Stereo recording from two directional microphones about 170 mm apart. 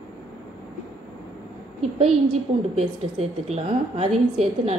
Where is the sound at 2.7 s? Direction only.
35° right (ahead or behind).